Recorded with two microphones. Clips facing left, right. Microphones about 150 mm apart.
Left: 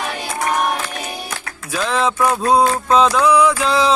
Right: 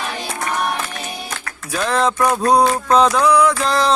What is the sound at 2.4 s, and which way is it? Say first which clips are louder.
Music: right 1 dB; 5° left (ahead or behind).